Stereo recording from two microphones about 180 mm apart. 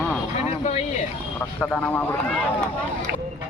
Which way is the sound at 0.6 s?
35° left (ahead or behind).